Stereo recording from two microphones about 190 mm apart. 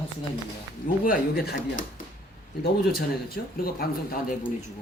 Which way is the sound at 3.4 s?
50° left (ahead or behind).